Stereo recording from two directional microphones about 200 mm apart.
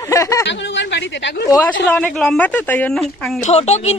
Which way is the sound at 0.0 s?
15° left (ahead or behind).